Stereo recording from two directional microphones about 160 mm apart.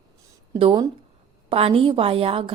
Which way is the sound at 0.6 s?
35° right (ahead or behind).